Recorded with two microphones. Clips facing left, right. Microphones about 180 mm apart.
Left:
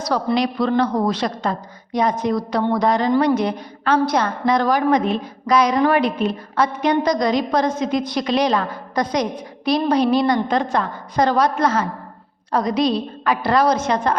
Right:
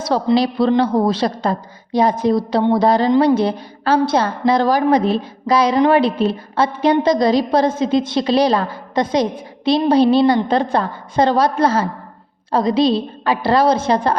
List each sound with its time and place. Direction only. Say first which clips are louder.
0.0 s a woman's voice: right 4 dB; 25° right (ahead or behind)